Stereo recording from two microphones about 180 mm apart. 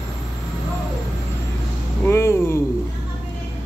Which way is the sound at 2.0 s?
15° left (ahead or behind).